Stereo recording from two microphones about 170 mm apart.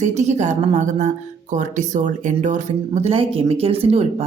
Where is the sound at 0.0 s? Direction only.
40° right (ahead or behind).